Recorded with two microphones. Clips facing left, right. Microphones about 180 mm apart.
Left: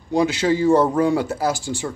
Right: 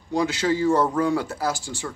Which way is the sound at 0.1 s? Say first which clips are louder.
Left 4 dB; 25° left (ahead or behind).